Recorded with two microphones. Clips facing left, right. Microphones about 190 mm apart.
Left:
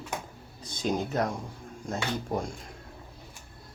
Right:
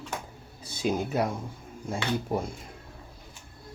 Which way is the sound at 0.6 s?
10° right (ahead or behind).